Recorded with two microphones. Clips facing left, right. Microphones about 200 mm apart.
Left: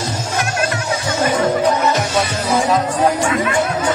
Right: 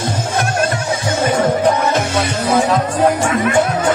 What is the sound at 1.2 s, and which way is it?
Music, 55° right (ahead or behind).